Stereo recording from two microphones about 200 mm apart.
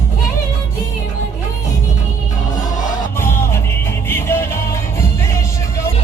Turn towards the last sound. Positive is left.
turn(degrees=10)  # may be behind; listen again after turning